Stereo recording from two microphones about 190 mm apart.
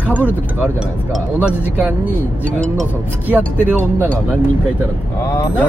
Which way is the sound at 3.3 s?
10° right (ahead or behind).